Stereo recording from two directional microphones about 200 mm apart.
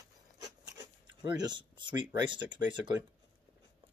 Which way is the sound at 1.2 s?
20° right (ahead or behind).